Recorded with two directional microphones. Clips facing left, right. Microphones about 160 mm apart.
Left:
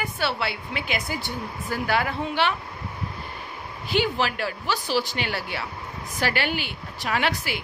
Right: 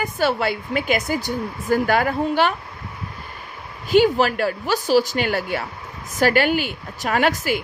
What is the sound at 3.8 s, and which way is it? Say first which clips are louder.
A woman's voice: right 8 dB; 45° right (ahead or behind).